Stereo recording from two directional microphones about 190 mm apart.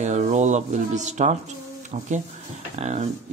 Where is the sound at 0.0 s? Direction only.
40° right (ahead or behind).